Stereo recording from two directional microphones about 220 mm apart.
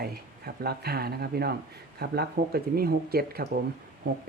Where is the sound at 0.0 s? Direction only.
45° right (ahead or behind).